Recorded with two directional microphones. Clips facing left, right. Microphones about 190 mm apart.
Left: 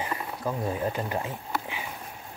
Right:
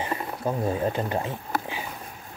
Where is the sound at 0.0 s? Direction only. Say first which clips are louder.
Right 3 dB; 25° right (ahead or behind).